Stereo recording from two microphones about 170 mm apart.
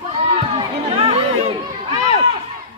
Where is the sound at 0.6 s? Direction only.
35° right (ahead or behind).